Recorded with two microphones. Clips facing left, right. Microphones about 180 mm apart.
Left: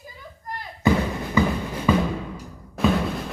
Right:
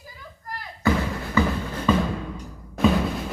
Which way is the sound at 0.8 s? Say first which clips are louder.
Left 2 dB; 20° left (ahead or behind).